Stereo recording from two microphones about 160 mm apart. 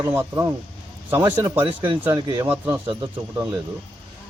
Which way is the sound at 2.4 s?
15° right (ahead or behind).